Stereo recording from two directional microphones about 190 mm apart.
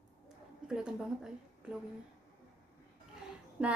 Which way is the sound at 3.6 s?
5° right (ahead or behind).